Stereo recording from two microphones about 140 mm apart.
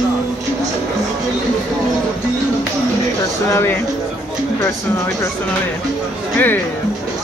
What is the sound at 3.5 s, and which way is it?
Speech, 15° left (ahead or behind).